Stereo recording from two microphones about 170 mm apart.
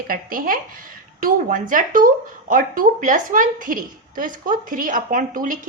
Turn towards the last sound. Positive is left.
turn(degrees=-55)  # may be behind; listen again after turning